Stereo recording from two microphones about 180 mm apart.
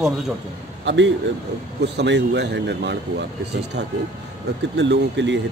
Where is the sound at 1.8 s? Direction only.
70° right (ahead or behind).